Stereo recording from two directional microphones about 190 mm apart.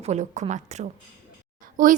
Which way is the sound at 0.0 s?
35° right (ahead or behind).